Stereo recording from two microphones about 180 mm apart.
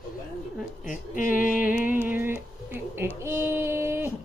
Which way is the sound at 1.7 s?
10° right (ahead or behind).